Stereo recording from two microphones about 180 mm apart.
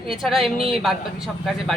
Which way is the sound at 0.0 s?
Centre (ahead or behind).